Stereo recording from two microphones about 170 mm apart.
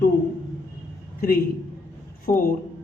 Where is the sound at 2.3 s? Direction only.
55° left (ahead or behind).